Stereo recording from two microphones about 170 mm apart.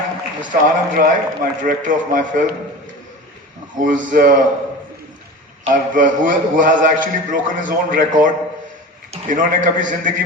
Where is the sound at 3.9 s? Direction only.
50° right (ahead or behind).